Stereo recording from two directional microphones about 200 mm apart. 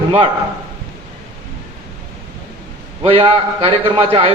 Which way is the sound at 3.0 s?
30° right (ahead or behind).